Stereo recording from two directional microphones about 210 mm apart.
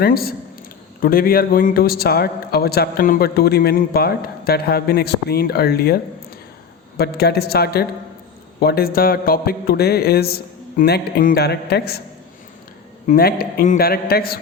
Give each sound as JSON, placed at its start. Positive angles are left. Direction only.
{"t": 0.0, "sound": "a man's voice", "side_deg": 45}
{"t": 13.1, "sound": "a man's voice", "side_deg": 45}